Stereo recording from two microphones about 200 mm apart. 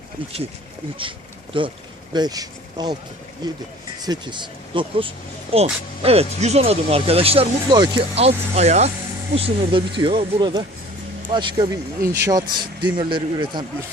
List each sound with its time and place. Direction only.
1.5 s speech: 25° right (ahead or behind)